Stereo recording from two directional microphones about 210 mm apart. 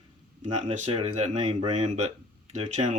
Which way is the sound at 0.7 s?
35° right (ahead or behind).